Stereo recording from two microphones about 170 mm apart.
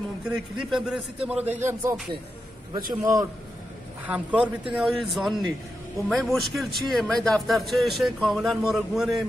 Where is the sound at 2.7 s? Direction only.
20° right (ahead or behind).